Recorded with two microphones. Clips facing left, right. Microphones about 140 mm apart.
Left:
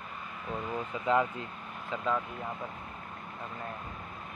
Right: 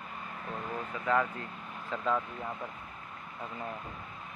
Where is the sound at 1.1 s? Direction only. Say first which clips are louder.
Left 2 dB; 20° left (ahead or behind).